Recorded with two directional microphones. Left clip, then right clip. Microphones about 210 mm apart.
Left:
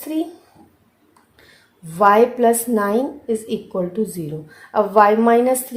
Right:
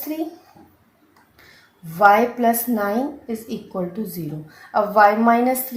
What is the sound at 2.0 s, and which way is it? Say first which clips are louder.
A woman's voice: left 1 dB; 50° left (ahead or behind).